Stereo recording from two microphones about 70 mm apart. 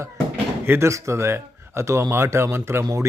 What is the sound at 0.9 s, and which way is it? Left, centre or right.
Speech, right.